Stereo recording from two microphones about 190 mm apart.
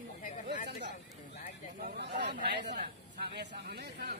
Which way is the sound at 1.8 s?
55° right (ahead or behind).